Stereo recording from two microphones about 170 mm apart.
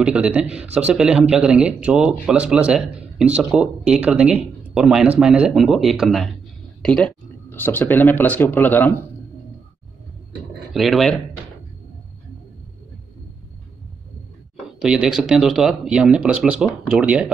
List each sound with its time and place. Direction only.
0.0 s speech: 5° right (ahead or behind); by 8.9 s 10° left (ahead or behind)
10.7 s speech: centre (ahead or behind)
14.8 s speech: 5° right (ahead or behind)